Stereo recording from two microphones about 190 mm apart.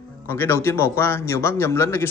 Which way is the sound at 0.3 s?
15° left (ahead or behind).